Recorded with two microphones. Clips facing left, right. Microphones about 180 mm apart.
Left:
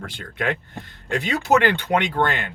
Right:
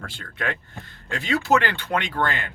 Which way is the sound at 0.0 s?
20° left (ahead or behind).